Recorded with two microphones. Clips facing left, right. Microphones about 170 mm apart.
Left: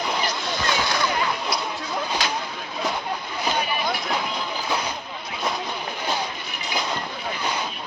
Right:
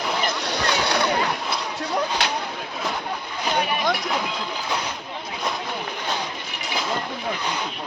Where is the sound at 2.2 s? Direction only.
70° right (ahead or behind).